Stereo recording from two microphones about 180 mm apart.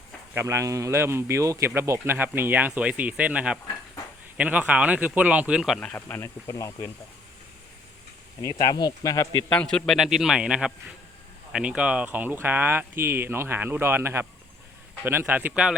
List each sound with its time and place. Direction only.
0.3 s speech: 15° right (ahead or behind); by 6.9 s 20° left (ahead or behind)
8.4 s speech: 20° left (ahead or behind)
9.5 s speech: 5° left (ahead or behind)